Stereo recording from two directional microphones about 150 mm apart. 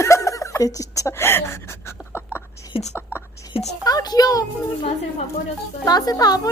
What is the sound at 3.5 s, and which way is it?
Speech, 40° left (ahead or behind).